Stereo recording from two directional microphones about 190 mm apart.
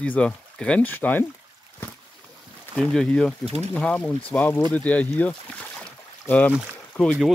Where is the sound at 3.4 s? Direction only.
35° right (ahead or behind).